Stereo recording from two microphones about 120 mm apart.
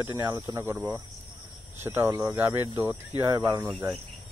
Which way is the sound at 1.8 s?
20° right (ahead or behind).